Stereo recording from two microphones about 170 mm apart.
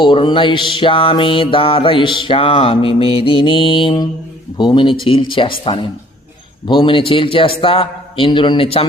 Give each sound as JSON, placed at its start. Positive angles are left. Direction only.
{"t": 0.0, "sound": "mantra", "side_deg": 30}
{"t": 4.5, "sound": "speech", "side_deg": 25}
{"t": 6.7, "sound": "mantra", "side_deg": 30}